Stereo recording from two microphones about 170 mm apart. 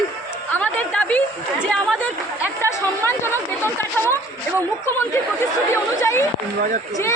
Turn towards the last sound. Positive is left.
turn(degrees=15)  # may be behind; listen again after turning